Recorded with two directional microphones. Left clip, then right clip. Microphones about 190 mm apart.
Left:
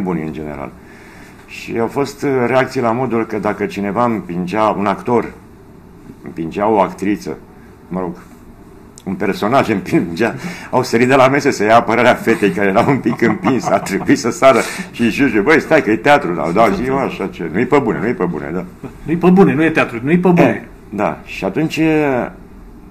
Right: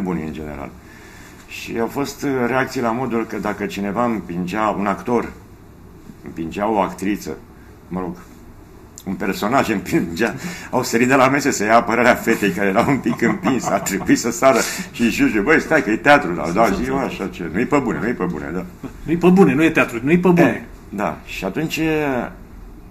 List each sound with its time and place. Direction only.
0.0 s speech: 15° left (ahead or behind)
6.3 s speech: 15° left (ahead or behind)
19.0 s a man's voice: 5° right (ahead or behind)
20.3 s speech: 15° left (ahead or behind)